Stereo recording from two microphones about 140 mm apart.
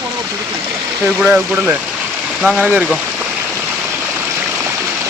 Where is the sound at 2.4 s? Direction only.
10° right (ahead or behind).